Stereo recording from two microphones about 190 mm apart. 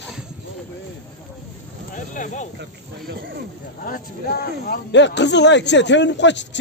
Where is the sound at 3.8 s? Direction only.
50° left (ahead or behind); by 6.6 s 70° left (ahead or behind).